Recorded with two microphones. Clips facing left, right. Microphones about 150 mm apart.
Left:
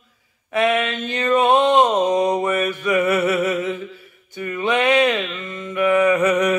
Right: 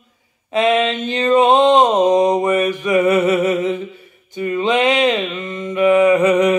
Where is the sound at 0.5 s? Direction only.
20° right (ahead or behind).